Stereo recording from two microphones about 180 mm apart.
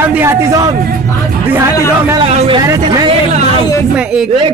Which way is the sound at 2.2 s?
35° right (ahead or behind).